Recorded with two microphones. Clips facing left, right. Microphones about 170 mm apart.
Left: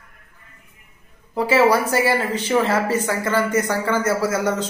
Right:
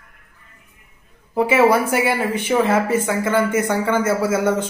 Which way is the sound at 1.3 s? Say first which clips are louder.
Right 1 dB; 15° right (ahead or behind).